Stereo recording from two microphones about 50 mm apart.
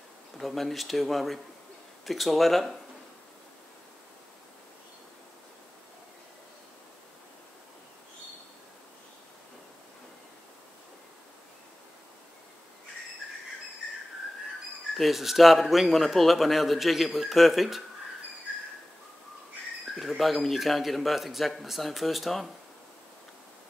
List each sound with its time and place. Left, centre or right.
0.4 s a man's voice: centre
15.0 s a man's voice: centre
20.0 s a man's voice: centre